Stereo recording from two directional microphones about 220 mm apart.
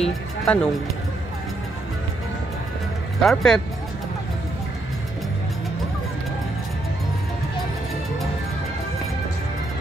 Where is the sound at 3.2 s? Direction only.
Centre (ahead or behind).